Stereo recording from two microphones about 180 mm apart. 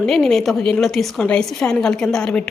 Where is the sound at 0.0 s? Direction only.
Centre (ahead or behind).